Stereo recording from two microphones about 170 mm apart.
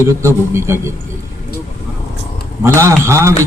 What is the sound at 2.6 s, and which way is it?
Speech, 15° right (ahead or behind).